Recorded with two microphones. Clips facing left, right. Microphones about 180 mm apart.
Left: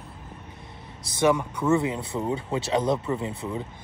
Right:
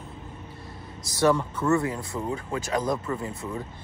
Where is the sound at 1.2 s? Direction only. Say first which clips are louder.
Even; 10° left (ahead or behind).